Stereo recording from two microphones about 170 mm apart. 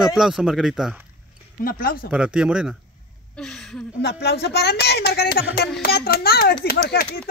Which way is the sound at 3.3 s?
5° left (ahead or behind).